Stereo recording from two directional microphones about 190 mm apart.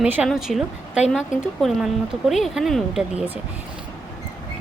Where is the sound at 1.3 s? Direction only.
40° left (ahead or behind).